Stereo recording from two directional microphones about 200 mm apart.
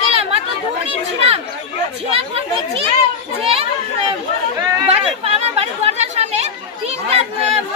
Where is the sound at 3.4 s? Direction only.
30° right (ahead or behind).